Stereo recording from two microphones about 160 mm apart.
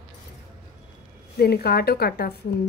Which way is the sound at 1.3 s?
80° left.